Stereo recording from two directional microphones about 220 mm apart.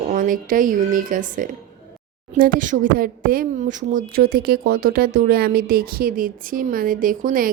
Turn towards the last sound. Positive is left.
turn(degrees=-40)  # may be behind; listen again after turning